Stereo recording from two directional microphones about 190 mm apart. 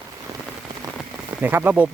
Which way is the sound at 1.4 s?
10° right (ahead or behind).